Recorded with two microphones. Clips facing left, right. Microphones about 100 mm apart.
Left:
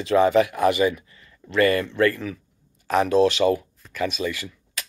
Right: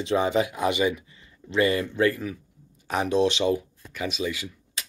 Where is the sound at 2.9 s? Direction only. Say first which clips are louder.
Left 4 dB; 15° right (ahead or behind).